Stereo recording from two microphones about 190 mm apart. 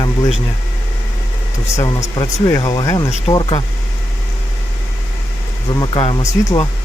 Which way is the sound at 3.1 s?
30° left (ahead or behind).